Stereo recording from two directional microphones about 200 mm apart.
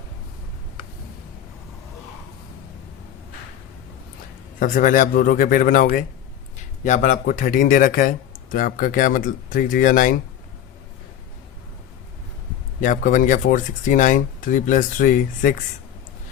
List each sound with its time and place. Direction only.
4.6 s speech: 40° left (ahead or behind)
12.8 s speech: 40° left (ahead or behind)